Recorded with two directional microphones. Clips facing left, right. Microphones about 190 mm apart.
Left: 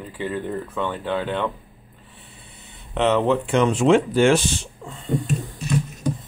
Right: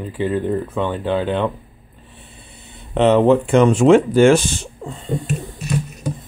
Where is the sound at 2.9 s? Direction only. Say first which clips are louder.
Right 6 dB; 35° right (ahead or behind).